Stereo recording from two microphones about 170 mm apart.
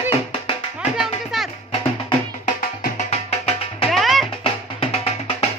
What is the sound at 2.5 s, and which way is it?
Music, 45° left (ahead or behind).